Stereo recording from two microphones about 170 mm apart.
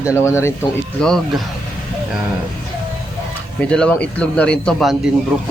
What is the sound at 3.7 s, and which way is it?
A man's voice, 5° left (ahead or behind).